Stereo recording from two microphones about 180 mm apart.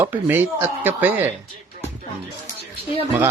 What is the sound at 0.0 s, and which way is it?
Speech, 10° right (ahead or behind).